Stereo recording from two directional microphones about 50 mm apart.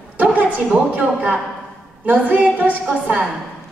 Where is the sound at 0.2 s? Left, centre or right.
Right.